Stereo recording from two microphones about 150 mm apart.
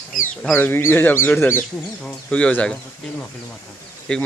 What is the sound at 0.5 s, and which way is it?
Speech, 15° left (ahead or behind).